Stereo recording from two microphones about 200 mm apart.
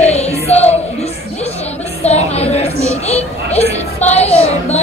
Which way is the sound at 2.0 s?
30° left (ahead or behind).